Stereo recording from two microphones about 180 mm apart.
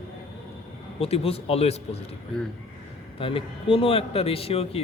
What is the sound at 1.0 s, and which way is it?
Speech, 35° left (ahead or behind).